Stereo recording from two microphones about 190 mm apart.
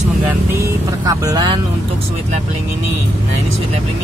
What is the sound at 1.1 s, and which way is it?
Speech, 20° right (ahead or behind).